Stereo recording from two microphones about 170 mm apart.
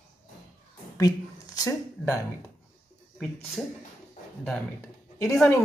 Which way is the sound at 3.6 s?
Centre (ahead or behind).